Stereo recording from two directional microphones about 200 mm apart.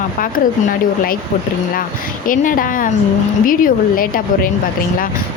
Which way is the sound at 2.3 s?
40° left (ahead or behind).